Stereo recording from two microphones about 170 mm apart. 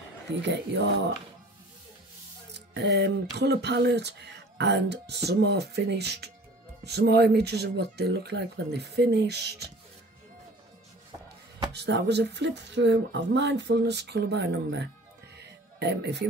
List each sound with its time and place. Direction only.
0.4 s speech: 90° right
2.5 s music: 85° right
6.8 s speech: 75° right (ahead or behind)
11.7 s speech: 85° right
15.3 s music: 80° right